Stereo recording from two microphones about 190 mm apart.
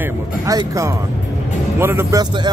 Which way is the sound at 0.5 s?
20° right (ahead or behind).